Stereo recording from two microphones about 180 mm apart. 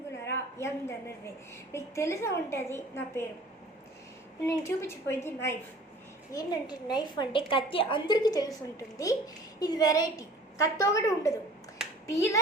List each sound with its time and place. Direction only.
0.3 s a woman's voice: 15° left (ahead or behind)
4.4 s a woman's voice: 15° left (ahead or behind)